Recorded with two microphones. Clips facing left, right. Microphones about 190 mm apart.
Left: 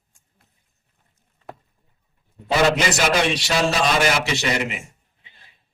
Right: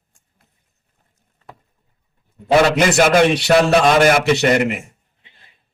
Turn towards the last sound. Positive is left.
turn(degrees=-55)  # may be behind; listen again after turning